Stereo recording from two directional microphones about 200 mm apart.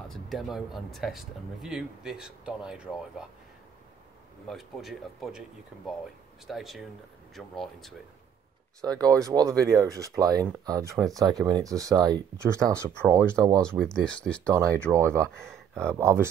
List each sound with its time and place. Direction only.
0.1 s speech: centre (ahead or behind)
4.5 s speech: centre (ahead or behind)
6.4 s speech: centre (ahead or behind)
8.8 s speech: 20° right (ahead or behind)
13.6 s speech: 5° left (ahead or behind)
14.9 s speech: 15° right (ahead or behind)
15.4 s speech: 5° left (ahead or behind)
15.9 s speech: 15° right (ahead or behind)